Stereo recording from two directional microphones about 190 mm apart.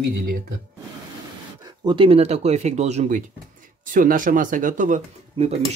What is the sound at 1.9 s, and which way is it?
Speech, 30° right (ahead or behind).